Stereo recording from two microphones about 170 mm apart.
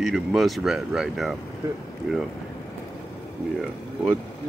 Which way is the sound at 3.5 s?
5° right (ahead or behind).